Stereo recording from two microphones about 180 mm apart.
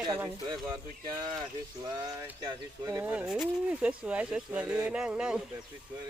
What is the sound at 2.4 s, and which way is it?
Speech, 20° right (ahead or behind).